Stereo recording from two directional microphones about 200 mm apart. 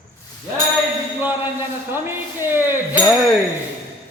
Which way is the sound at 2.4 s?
10° right (ahead or behind).